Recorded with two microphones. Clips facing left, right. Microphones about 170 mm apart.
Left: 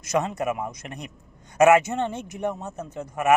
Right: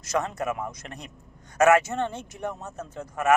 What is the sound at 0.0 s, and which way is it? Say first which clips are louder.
A man's voice: left 3 dB; 15° left (ahead or behind).